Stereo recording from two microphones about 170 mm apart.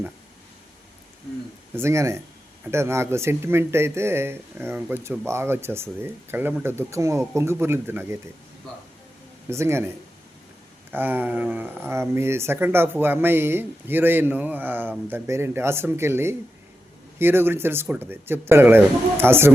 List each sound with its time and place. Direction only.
1.7 s speech: 15° right (ahead or behind)
9.5 s speech: 15° right (ahead or behind)
10.9 s speech: 10° right (ahead or behind)